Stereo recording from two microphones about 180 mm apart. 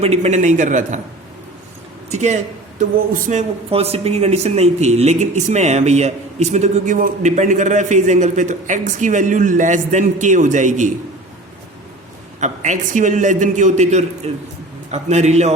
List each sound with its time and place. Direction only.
0.0 s speech: 35° right (ahead or behind)
2.0 s speech: 40° right (ahead or behind)
12.4 s a man's voice: 45° right (ahead or behind)